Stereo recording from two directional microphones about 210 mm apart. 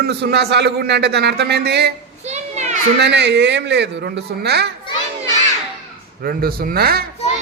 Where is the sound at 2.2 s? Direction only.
30° right (ahead or behind).